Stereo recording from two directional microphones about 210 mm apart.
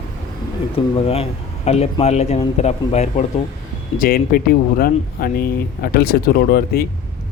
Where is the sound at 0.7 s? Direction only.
30° left (ahead or behind).